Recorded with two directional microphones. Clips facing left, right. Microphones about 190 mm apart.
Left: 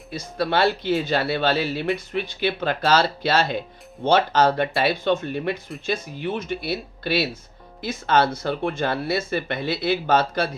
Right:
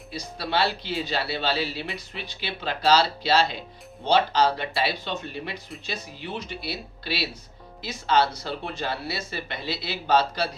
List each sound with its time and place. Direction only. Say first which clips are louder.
0.1 s speech: left 5 dB; 50° left (ahead or behind)